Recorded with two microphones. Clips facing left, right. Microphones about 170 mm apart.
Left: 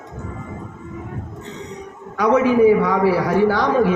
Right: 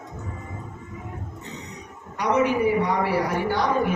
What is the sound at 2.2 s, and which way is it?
A man's voice, 90° left.